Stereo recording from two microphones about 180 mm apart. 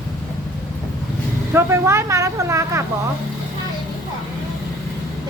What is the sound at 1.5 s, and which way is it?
A woman's voice, 15° right (ahead or behind).